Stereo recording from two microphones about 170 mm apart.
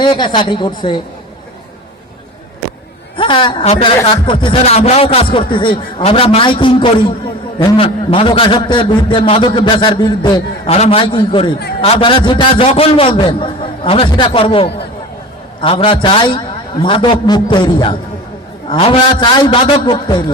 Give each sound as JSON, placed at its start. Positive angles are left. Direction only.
{"t": 0.0, "sound": "a man's voice", "side_deg": 25}
{"t": 3.2, "sound": "a man's voice", "side_deg": 30}
{"t": 10.7, "sound": "a man's voice", "side_deg": 35}